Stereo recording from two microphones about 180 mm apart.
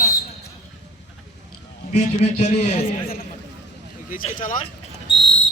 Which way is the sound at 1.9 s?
35° left (ahead or behind).